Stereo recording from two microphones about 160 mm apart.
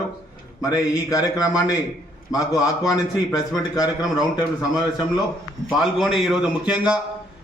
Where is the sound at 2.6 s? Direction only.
25° left (ahead or behind).